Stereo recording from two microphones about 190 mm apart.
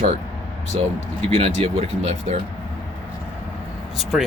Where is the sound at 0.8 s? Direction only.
30° right (ahead or behind).